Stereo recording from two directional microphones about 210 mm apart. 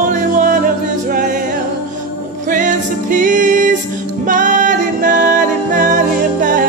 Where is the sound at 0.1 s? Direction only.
40° right (ahead or behind).